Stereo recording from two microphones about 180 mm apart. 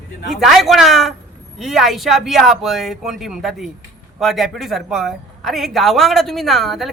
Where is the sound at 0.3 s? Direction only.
Centre (ahead or behind).